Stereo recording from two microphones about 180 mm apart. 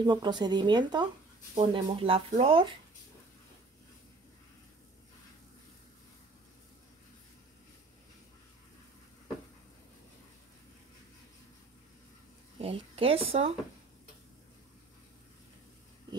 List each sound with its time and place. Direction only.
0.0 s speech: 25° right (ahead or behind)
12.5 s speech: 35° right (ahead or behind)